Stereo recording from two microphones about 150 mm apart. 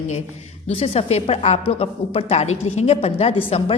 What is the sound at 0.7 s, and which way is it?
A woman's voice, 40° left (ahead or behind).